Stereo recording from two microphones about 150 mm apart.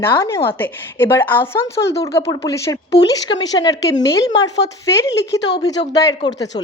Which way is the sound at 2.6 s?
30° left (ahead or behind).